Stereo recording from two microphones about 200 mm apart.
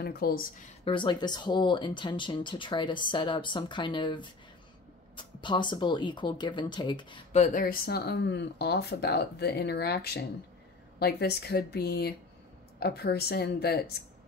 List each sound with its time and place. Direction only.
0.0 s speech: 50° left (ahead or behind)
0.8 s speech: 25° left (ahead or behind)
7.4 s speech: 45° left (ahead or behind)